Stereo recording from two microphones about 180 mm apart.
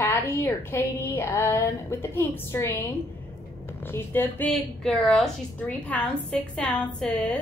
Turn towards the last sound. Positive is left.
turn(degrees=5)  # may be behind; listen again after turning